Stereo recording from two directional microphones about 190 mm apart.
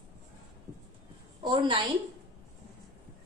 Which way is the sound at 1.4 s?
25° right (ahead or behind).